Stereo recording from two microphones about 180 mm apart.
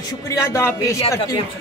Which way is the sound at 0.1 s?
15° left (ahead or behind).